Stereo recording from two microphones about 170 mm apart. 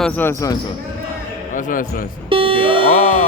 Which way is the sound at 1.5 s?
50° left (ahead or behind).